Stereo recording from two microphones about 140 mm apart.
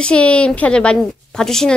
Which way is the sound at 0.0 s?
5° left (ahead or behind).